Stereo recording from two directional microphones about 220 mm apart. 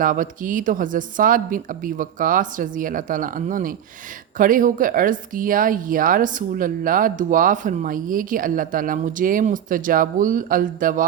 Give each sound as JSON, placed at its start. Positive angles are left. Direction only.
{"t": 0.0, "sound": "speech", "side_deg": -35}